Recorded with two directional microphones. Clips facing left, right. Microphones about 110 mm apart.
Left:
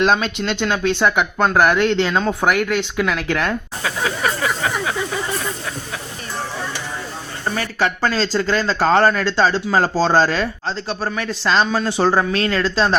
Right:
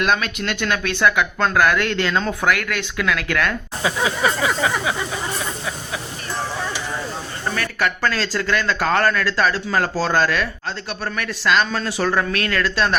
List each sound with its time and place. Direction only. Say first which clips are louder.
0.0 s speech: left 3 dB; 30° left (ahead or behind)
3.8 s speech: right 2 dB; 15° right (ahead or behind)
7.5 s speech: left 2 dB; 25° left (ahead or behind)